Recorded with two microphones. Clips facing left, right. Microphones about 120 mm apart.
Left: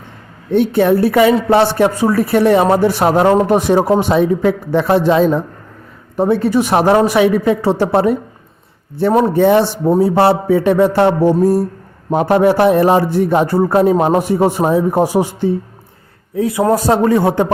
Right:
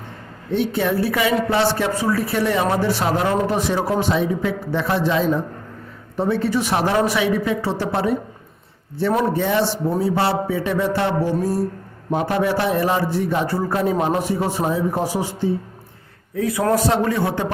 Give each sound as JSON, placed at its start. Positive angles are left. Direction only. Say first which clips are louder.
{"t": 0.5, "sound": "a man's voice", "louder": "left 8 dB", "side_deg": 55}
{"t": 16.3, "sound": "a man's voice", "louder": "left 6 dB", "side_deg": 25}
{"t": 16.7, "sound": "a man's voice", "louder": "left 7 dB", "side_deg": 40}